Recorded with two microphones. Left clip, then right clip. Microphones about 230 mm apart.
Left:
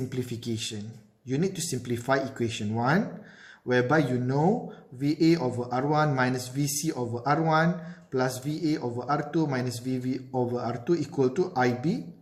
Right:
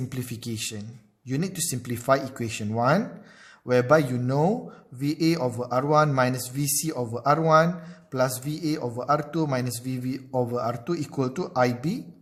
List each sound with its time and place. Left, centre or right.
0.1 s speech: right